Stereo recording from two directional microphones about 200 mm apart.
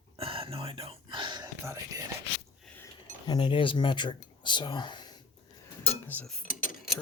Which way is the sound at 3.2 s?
20° left (ahead or behind).